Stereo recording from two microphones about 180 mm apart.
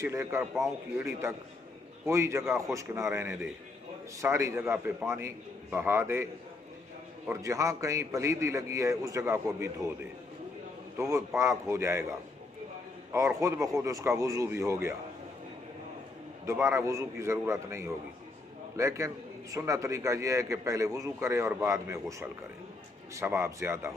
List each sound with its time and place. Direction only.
0.0 s a man's voice: 15° right (ahead or behind)
7.2 s a man's voice: 15° right (ahead or behind)
11.0 s a man's voice: 15° right (ahead or behind)
13.1 s a man's voice: 15° right (ahead or behind)
16.4 s a man's voice: 15° right (ahead or behind)